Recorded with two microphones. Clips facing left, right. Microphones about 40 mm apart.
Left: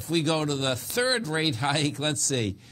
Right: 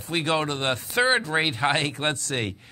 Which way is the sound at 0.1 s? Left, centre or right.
Right.